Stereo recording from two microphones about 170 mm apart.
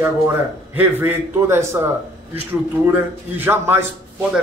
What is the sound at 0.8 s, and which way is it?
A man's voice, 10° right (ahead or behind).